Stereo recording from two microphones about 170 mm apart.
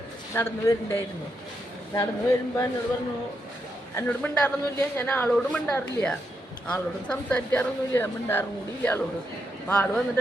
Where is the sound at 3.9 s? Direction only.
10° left (ahead or behind).